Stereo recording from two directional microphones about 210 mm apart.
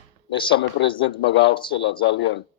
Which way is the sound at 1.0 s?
55° left (ahead or behind).